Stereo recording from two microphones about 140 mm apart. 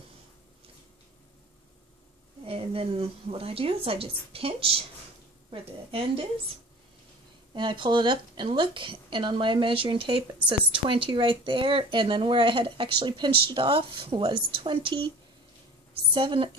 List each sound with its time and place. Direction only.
2.4 s a woman's voice: 45° right (ahead or behind)
7.5 s a woman's voice: 35° right (ahead or behind)